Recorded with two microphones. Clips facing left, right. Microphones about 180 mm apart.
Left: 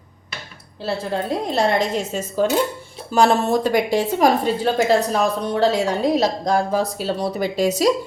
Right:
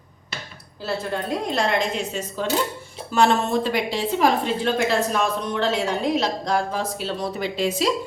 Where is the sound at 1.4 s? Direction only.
40° left (ahead or behind).